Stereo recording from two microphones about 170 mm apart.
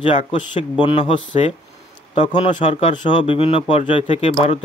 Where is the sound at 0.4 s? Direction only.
25° left (ahead or behind).